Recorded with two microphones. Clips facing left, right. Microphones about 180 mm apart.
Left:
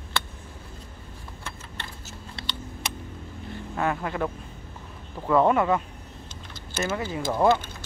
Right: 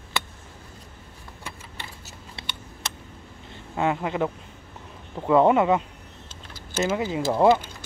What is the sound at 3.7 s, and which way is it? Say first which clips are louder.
Speech: right 3 dB; 20° right (ahead or behind).